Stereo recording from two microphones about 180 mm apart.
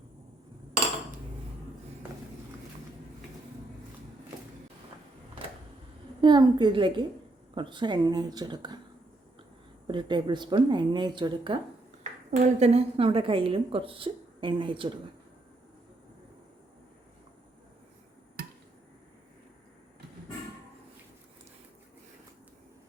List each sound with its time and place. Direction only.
6.2 s a woman's voice: 25° right (ahead or behind)
9.8 s a woman's voice: 25° right (ahead or behind)
12.3 s a woman's voice: 35° right (ahead or behind)